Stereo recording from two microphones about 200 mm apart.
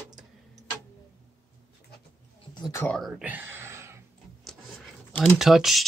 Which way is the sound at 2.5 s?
20° left (ahead or behind).